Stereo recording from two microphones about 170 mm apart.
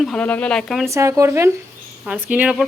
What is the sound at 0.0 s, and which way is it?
Speech, 5° left (ahead or behind).